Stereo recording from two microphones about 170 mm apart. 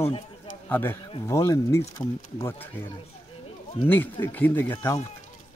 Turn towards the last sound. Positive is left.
turn(degrees=15)  # may be behind; listen again after turning